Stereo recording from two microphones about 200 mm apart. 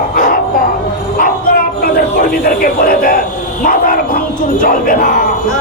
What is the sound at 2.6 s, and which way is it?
Speech, 45° left (ahead or behind).